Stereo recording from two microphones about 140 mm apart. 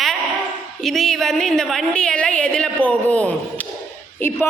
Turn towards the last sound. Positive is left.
turn(degrees=15)  # may be behind; listen again after turning